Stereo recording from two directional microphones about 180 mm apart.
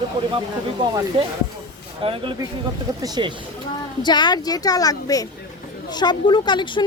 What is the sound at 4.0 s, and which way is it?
Speech, 25° left (ahead or behind).